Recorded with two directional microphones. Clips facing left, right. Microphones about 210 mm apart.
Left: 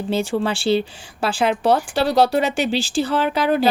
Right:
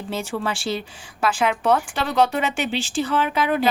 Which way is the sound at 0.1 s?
30° left (ahead or behind).